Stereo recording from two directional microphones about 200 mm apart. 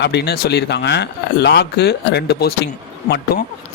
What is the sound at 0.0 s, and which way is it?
Speech, 55° left (ahead or behind).